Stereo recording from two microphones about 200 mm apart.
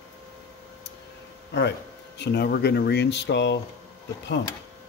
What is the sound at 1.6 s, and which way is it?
Speech, 60° left (ahead or behind).